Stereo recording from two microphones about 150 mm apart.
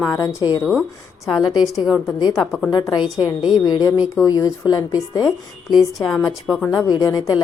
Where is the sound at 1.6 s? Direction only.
Centre (ahead or behind).